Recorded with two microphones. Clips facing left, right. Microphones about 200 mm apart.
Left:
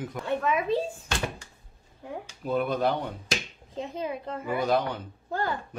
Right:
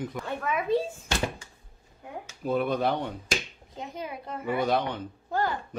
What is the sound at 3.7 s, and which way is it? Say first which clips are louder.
Speech: left 4 dB; 30° left (ahead or behind).